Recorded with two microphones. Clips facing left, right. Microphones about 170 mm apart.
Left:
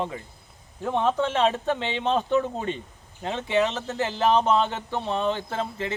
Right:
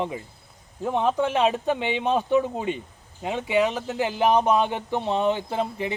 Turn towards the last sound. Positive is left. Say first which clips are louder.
# right 3 dB
turn(degrees=-15)  # may be behind; listen again after turning